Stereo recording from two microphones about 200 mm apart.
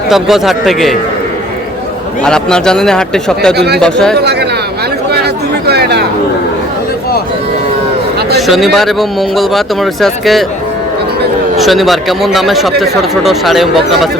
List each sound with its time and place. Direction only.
0.1 s speech: centre (ahead or behind)
2.2 s speech: 5° left (ahead or behind)
4.2 s speech: 55° right (ahead or behind)
5.6 s chatter: 55° right (ahead or behind)
8.4 s speech: centre (ahead or behind)
11.5 s speech: centre (ahead or behind)